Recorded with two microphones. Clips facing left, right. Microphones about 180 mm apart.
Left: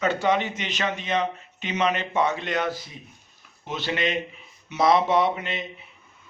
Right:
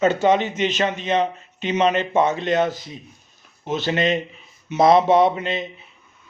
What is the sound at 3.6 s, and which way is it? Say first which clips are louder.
Speech: right 6 dB; 45° right (ahead or behind).